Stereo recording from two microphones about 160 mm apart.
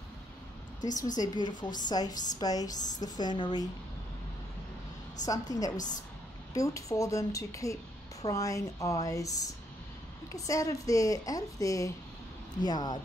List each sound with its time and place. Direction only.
0.7 s a woman's voice: 50° left (ahead or behind)
1.1 s a woman's voice: 25° left (ahead or behind)
5.2 s a woman's voice: 20° left (ahead or behind)